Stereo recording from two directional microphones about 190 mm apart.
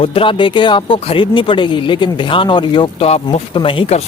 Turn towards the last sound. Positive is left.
turn(degrees=30)  # may be behind; listen again after turning